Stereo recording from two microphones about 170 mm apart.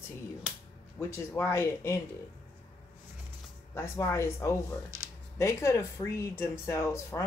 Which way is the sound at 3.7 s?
15° left (ahead or behind).